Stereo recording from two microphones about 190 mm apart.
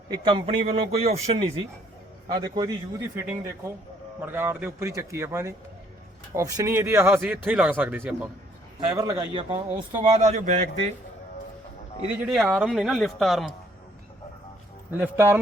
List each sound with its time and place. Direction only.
0.1 s a man's voice: 25° right (ahead or behind)
2.3 s a man's voice: 20° right (ahead or behind)
4.2 s a man's voice: 10° right (ahead or behind)
9.6 s speech: 10° right (ahead or behind)
10.0 s a man's voice: 35° right (ahead or behind)
12.2 s speech: centre (ahead or behind)
14.9 s speech: 10° right (ahead or behind)